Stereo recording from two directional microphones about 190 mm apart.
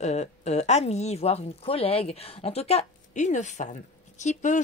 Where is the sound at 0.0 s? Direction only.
35° left (ahead or behind).